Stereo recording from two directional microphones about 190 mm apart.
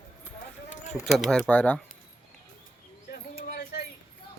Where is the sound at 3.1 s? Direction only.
55° left (ahead or behind).